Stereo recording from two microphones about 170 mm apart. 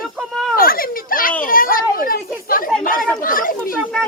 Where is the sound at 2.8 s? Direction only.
55° left (ahead or behind).